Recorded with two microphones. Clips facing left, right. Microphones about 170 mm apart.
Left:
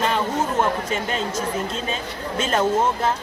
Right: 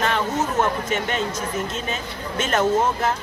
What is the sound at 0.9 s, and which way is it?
Speech, 30° left (ahead or behind).